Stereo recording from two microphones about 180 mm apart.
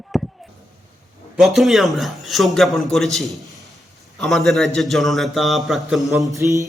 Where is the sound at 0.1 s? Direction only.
Centre (ahead or behind).